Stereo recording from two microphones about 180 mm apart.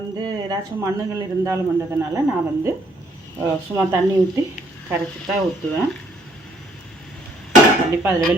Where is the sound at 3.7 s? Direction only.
15° right (ahead or behind).